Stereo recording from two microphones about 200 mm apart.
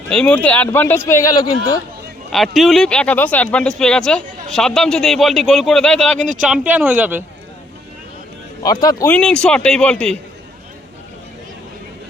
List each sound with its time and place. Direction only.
0.1 s speech: 5° left (ahead or behind)
2.3 s speech: centre (ahead or behind)
6.1 s speech: 40° right (ahead or behind)
6.4 s speech: 5° right (ahead or behind)
8.6 s speech: 20° left (ahead or behind)